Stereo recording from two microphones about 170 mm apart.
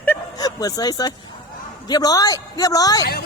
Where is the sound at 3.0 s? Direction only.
65° left (ahead or behind).